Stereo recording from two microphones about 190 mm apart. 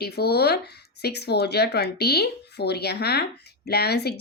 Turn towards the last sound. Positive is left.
turn(degrees=60)  # may be behind; listen again after turning